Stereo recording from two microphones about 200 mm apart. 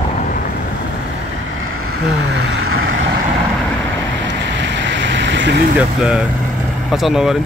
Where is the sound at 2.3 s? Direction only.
75° right (ahead or behind).